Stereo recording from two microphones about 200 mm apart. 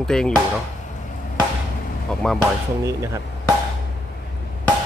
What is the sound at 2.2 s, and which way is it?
Speech, centre (ahead or behind).